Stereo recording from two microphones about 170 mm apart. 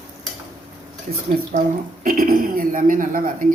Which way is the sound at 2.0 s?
55° right (ahead or behind).